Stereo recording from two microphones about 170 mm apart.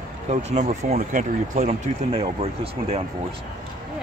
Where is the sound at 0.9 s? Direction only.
50° right (ahead or behind).